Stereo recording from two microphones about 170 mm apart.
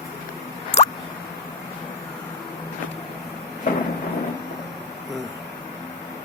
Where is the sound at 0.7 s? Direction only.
40° left (ahead or behind).